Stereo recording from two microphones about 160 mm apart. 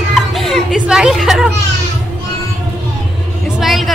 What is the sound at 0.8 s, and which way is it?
Speech, 5° right (ahead or behind).